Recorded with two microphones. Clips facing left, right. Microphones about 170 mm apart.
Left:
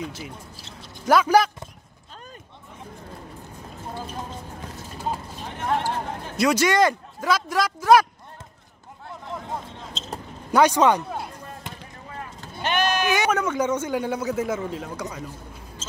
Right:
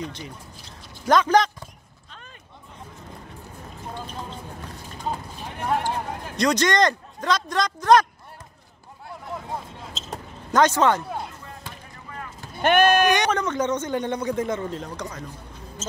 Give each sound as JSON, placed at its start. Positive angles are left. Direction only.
{"t": 0.0, "sound": "a man's voice", "side_deg": 5}
{"t": 5.6, "sound": "speech", "side_deg": -10}
{"t": 6.3, "sound": "a man's voice", "side_deg": 5}
{"t": 10.5, "sound": "a man's voice", "side_deg": 10}
{"t": 11.6, "sound": "basketball bounce", "side_deg": 25}
{"t": 12.6, "sound": "speech", "side_deg": -55}
{"t": 13.1, "sound": "a man's voice", "side_deg": 5}